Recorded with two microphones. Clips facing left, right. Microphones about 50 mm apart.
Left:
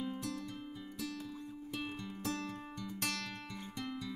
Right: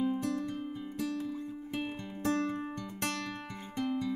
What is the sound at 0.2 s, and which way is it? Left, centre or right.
Music, right.